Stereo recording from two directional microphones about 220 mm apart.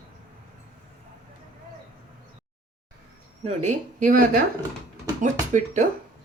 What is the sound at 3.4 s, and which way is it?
A woman's voice, 35° right (ahead or behind).